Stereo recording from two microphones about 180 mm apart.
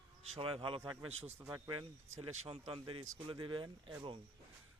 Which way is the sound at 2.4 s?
35° right (ahead or behind).